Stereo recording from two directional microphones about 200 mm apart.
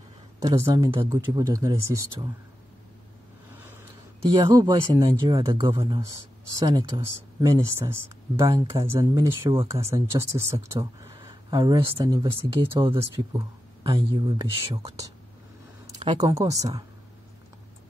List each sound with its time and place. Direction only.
0.4 s speech: 15° right (ahead or behind)
4.4 s speech: 20° right (ahead or behind)